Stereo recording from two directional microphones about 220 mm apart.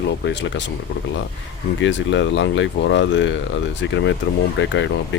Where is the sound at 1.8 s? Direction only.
55° left (ahead or behind).